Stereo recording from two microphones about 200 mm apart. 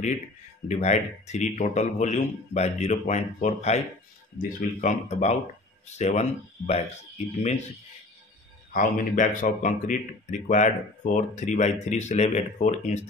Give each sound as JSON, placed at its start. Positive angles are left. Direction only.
{"t": 0.7, "sound": "speech", "side_deg": 35}
{"t": 8.7, "sound": "speech", "side_deg": 40}